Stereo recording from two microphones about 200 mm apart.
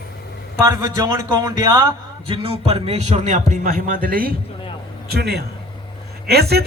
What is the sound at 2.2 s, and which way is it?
Speech, 25° right (ahead or behind).